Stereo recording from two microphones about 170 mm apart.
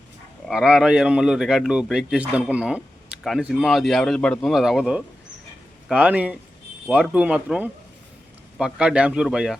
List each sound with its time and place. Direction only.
0.4 s speech: 5° right (ahead or behind)